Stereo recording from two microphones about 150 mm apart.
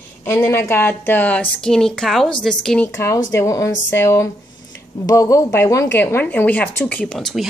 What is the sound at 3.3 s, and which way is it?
A woman's voice, 20° left (ahead or behind).